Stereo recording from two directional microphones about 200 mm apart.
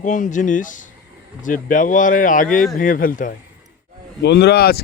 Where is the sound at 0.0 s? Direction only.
40° left (ahead or behind).